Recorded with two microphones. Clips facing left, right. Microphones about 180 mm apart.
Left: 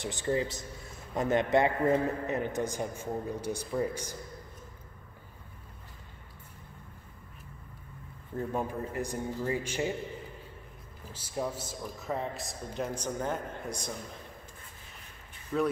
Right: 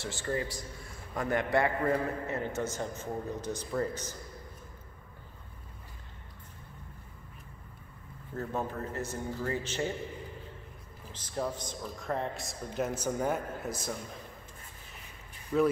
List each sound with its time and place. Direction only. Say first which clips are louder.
0.0 s a man's voice: left 3 dB; 20° left (ahead or behind)
8.4 s a man's voice: left 2 dB; 10° left (ahead or behind)
11.1 s a man's voice: even; 10° left (ahead or behind)
15.5 s speech: right 3 dB; 5° right (ahead or behind)